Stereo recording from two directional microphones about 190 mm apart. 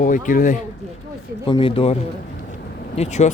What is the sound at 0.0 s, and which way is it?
Speech, 45° left (ahead or behind).